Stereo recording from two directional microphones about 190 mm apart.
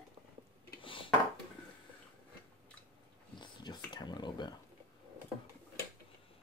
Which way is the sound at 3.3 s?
25° left (ahead or behind).